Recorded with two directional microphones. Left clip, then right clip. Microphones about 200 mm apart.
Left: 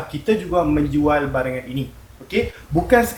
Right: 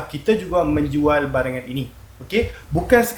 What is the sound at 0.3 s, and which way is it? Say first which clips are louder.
Speech: even; 45° right (ahead or behind).